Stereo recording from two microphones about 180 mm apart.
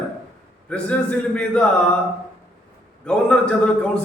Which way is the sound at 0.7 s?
5° left (ahead or behind).